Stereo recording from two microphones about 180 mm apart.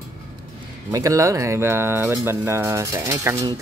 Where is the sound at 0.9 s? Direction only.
20° right (ahead or behind).